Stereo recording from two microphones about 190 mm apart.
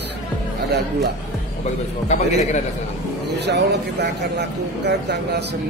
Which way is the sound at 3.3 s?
65° right (ahead or behind).